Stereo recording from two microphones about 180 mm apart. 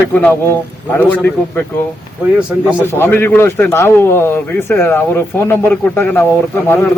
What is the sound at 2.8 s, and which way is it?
A man's voice, 10° left (ahead or behind).